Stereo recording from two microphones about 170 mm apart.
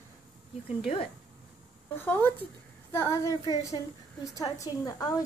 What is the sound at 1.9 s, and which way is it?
A woman's voice, 10° left (ahead or behind).